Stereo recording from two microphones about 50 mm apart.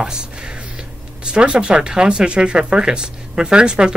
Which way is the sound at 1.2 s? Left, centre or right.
Centre.